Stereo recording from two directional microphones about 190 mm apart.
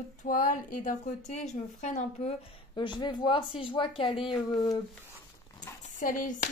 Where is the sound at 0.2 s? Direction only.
45° left (ahead or behind).